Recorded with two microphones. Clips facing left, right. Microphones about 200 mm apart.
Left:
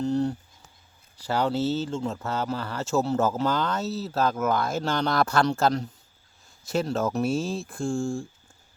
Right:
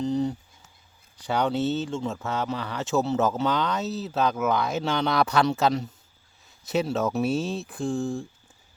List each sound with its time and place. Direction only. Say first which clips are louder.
0.0 s speech: left 1 dB; centre (ahead or behind)